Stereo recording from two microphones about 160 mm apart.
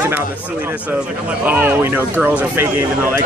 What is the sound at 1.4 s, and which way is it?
Speech, 10° right (ahead or behind).